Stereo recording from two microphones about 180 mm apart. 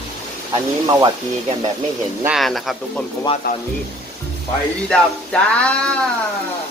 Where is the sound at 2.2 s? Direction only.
Centre (ahead or behind).